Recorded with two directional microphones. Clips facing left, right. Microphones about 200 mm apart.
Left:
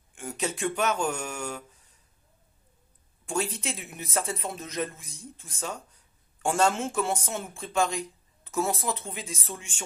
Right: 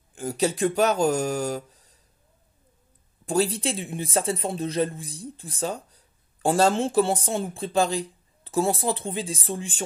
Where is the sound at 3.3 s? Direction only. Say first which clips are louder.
Right 7 dB; 35° right (ahead or behind).